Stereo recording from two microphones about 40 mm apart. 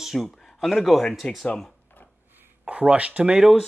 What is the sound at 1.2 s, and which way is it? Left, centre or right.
Speech, left.